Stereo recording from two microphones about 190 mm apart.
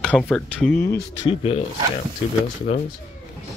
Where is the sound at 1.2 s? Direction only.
30° left (ahead or behind).